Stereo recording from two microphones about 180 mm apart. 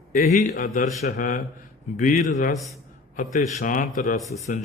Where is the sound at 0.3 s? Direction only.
50° left (ahead or behind).